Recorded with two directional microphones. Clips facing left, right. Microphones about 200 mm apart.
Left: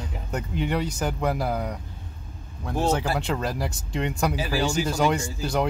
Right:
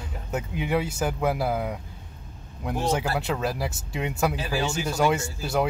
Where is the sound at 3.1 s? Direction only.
5° right (ahead or behind).